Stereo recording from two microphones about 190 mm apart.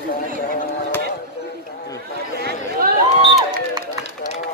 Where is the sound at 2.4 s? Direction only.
60° right (ahead or behind).